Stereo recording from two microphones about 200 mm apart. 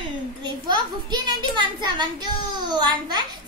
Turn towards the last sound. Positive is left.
turn(degrees=-20)  # may be behind; listen again after turning